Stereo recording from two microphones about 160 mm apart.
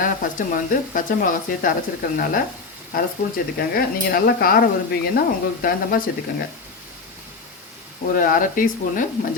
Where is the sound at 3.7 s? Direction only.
70° left (ahead or behind).